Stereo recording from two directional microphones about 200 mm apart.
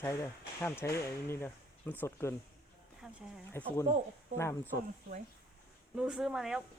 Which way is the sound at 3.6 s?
10° left (ahead or behind).